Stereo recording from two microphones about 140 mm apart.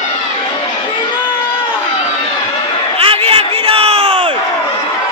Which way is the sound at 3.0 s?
40° right (ahead or behind).